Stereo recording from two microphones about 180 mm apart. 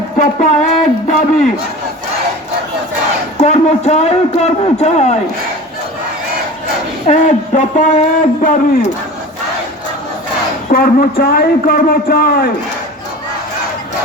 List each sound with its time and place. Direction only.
0.2 s speech: 40° left (ahead or behind)
3.4 s speech: 40° left (ahead or behind)
7.1 s a man's voice: 45° left (ahead or behind)
10.7 s a man's voice: 55° left (ahead or behind)